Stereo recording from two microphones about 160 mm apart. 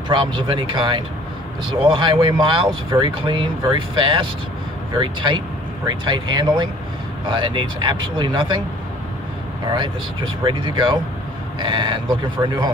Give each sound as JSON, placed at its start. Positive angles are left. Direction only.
{"t": 0.1, "sound": "speech", "side_deg": -30}
{"t": 9.7, "sound": "speech", "side_deg": -30}